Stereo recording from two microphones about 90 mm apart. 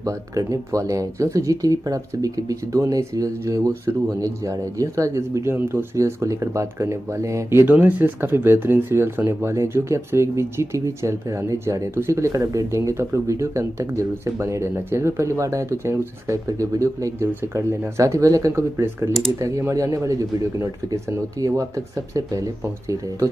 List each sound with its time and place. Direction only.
0.0 s speech: 40° right (ahead or behind)
7.6 s speech: 20° right (ahead or behind); by 21.6 s 40° right (ahead or behind)